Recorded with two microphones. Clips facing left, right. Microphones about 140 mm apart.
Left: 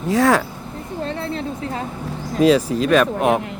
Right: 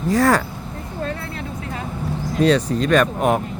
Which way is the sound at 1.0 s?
30° left (ahead or behind).